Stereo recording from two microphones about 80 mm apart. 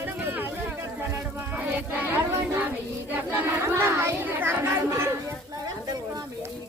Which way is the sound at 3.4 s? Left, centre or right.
Right.